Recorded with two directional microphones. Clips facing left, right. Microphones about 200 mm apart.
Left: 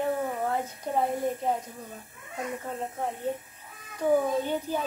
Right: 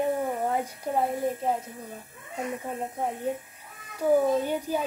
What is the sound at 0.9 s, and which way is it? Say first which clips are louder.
Speech: right 1 dB; centre (ahead or behind).